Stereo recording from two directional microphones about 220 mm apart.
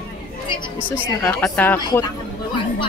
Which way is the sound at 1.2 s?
10° left (ahead or behind).